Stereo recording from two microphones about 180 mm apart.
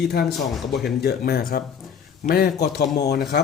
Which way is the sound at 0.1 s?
60° left (ahead or behind).